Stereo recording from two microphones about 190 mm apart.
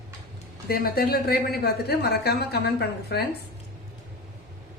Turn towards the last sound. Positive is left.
turn(degrees=60)  # may be behind; listen again after turning